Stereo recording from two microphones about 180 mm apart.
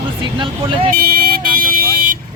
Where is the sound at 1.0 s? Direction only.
55° right (ahead or behind).